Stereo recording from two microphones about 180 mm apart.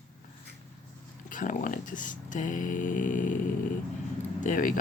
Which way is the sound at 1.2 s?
45° left (ahead or behind).